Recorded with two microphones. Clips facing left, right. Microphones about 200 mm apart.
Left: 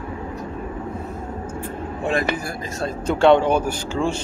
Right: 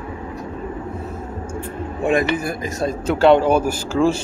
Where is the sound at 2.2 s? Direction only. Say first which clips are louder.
Right 4 dB; 20° right (ahead or behind).